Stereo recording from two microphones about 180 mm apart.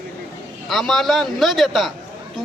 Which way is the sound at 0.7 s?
Centre (ahead or behind).